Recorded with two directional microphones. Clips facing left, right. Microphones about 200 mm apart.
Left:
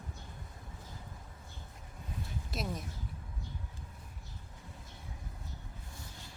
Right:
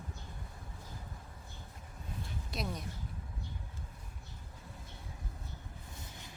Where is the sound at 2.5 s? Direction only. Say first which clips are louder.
Left 1 dB; centre (ahead or behind).